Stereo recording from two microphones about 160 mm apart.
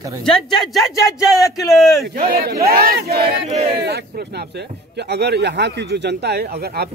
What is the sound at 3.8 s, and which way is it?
Speech, 80° right.